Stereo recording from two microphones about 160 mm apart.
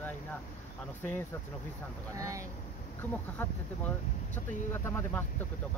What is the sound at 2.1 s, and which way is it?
Speech, 20° right (ahead or behind).